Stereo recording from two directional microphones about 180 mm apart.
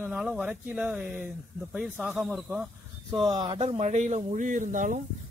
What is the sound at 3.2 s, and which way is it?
Speech, 25° right (ahead or behind).